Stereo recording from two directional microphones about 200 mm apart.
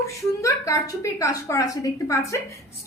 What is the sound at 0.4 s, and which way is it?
A woman's voice, 15° left (ahead or behind).